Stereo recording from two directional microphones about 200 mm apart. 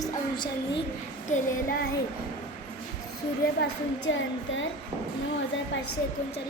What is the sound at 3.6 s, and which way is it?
A woman's voice, 65° left (ahead or behind).